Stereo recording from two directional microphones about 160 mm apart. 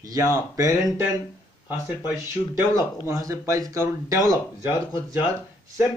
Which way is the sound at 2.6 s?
20° right (ahead or behind).